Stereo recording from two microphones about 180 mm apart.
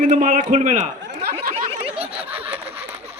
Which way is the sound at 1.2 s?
55° right (ahead or behind).